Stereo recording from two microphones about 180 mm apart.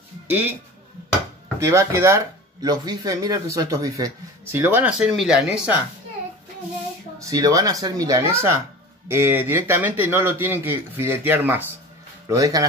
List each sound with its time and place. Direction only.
0.3 s speech: 10° right (ahead or behind)
1.6 s speech: 15° right (ahead or behind)
7.2 s speech: 20° right (ahead or behind)